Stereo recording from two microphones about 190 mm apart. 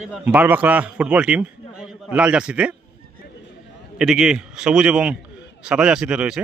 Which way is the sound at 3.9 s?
5° right (ahead or behind).